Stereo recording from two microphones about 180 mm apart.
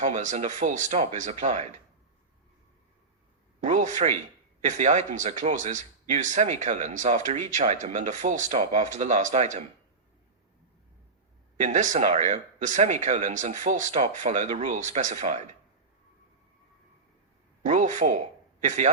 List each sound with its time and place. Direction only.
0.0 s speech: 45° right (ahead or behind)
3.6 s speech: 45° right (ahead or behind)
11.6 s speech: 40° right (ahead or behind)
17.7 s speech: 45° right (ahead or behind)